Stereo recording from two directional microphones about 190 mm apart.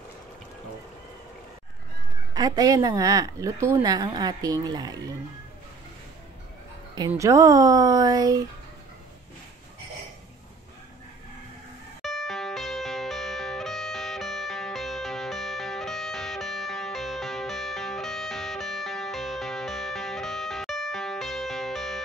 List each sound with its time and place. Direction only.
2.3 s a woman's voice: 20° right (ahead or behind)
7.1 s speech: 15° right (ahead or behind)
12.0 s music: centre (ahead or behind)